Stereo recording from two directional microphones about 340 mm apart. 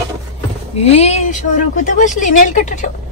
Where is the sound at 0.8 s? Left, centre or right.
Centre.